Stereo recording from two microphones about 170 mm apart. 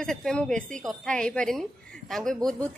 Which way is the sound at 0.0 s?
Centre (ahead or behind).